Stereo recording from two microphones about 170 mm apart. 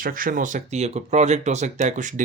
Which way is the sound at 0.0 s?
55° right (ahead or behind).